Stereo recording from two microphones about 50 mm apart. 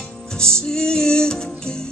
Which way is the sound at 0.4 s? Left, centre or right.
Centre.